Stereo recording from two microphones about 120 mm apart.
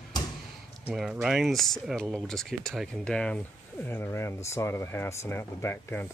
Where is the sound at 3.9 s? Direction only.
20° left (ahead or behind).